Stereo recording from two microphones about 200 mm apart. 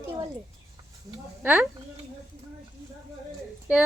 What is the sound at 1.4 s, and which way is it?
Speech, 10° right (ahead or behind).